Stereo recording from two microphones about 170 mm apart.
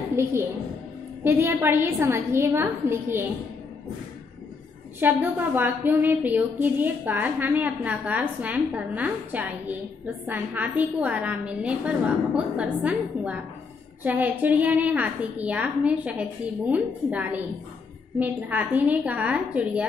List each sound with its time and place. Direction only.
0.2 s a woman's voice: 15° right (ahead or behind)
5.0 s a woman's voice: 10° right (ahead or behind)